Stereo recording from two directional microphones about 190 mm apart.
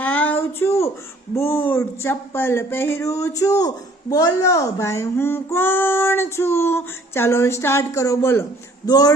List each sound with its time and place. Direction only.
0.0 s a sound: 10° left (ahead or behind)
1.4 s speech: 10° left (ahead or behind)
8.9 s music: 20° left (ahead or behind)